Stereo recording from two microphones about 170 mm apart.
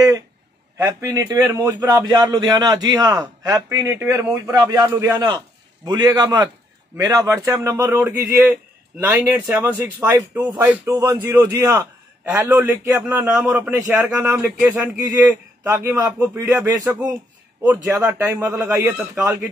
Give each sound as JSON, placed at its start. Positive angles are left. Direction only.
{"t": 0.8, "sound": "a man's voice", "side_deg": -25}
{"t": 15.0, "sound": "a man's voice", "side_deg": -20}